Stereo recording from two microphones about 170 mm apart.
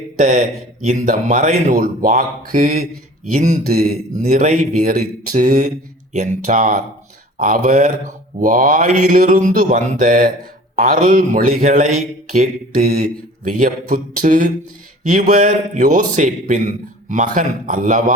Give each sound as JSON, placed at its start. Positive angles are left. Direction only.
{"t": 0.2, "sound": "speech", "side_deg": -55}
{"t": 3.3, "sound": "speech", "side_deg": -45}
{"t": 3.7, "sound": "a man's voice", "side_deg": -60}
{"t": 4.2, "sound": "a man's voice", "side_deg": -45}